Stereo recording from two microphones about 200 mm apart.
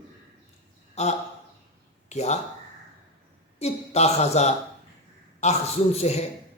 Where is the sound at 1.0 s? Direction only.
35° left (ahead or behind).